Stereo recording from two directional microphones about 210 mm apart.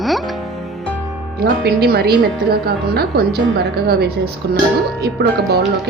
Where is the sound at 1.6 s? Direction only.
50° right (ahead or behind).